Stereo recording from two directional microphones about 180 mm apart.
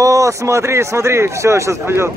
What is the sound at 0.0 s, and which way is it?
A man's voice, 15° right (ahead or behind).